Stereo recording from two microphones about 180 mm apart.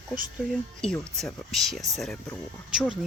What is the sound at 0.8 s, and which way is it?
Speech, 5° left (ahead or behind).